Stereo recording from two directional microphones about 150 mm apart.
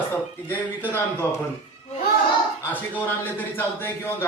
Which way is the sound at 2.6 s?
10° left (ahead or behind).